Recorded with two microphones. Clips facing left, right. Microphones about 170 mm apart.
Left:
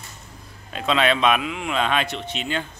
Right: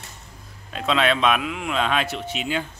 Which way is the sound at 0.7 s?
Centre (ahead or behind).